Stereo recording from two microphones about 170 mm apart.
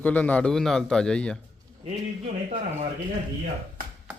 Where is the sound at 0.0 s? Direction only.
10° left (ahead or behind).